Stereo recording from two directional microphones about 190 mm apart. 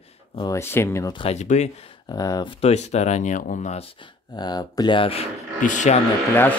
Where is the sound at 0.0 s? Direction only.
30° left (ahead or behind).